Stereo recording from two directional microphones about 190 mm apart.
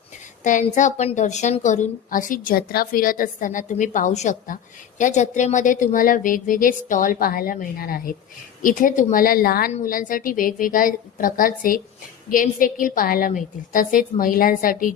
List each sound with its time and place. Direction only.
0.4 s a woman's voice: 40° left (ahead or behind)